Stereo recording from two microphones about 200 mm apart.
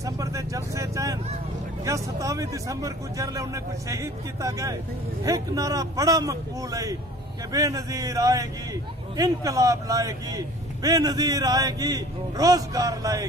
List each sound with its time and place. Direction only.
0.0 s a man's voice: 15° right (ahead or behind)